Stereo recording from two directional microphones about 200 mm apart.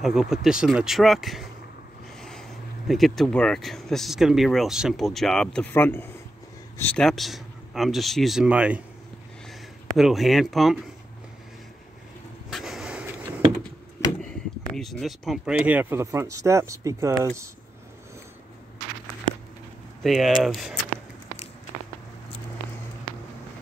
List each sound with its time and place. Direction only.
0.0 s speech: centre (ahead or behind)
2.9 s speech: centre (ahead or behind)
12.4 s vehicle: centre (ahead or behind)
14.7 s speech: centre (ahead or behind); by 17.3 s 15° right (ahead or behind)
20.0 s speech: centre (ahead or behind)